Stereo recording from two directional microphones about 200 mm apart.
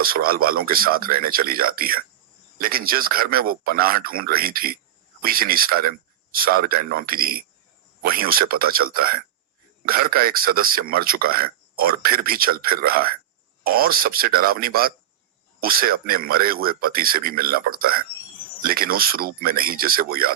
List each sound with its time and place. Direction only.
0.0 s a man's voice: 45° right (ahead or behind)